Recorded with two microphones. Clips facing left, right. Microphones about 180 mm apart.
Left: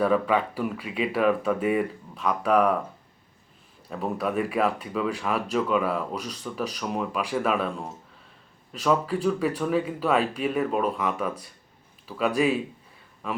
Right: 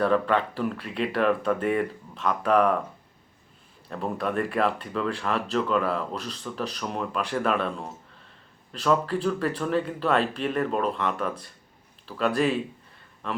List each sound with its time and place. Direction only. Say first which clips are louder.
0.0 s speech: even; 5° left (ahead or behind)
3.8 s speech: left 1 dB; 5° left (ahead or behind)